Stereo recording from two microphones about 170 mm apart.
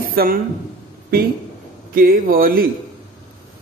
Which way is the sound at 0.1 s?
60° right (ahead or behind).